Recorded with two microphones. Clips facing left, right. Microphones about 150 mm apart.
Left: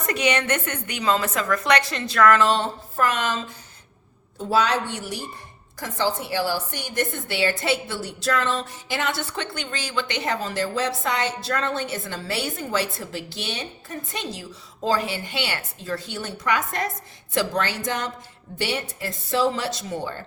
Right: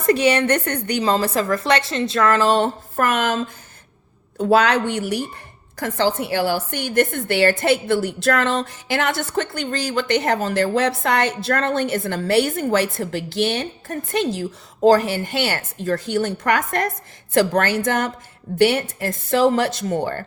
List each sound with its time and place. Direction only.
0.0 s a woman's voice: 30° right (ahead or behind)
2.6 s a woman's voice: 55° right (ahead or behind); by 9.9 s 40° right (ahead or behind)
9.9 s a woman's voice: 50° right (ahead or behind)